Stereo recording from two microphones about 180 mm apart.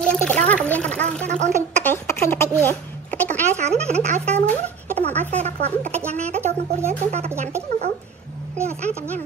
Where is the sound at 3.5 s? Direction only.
40° right (ahead or behind).